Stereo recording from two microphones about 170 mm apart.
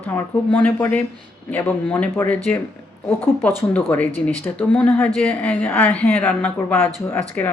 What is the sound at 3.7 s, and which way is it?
Speech, 10° left (ahead or behind).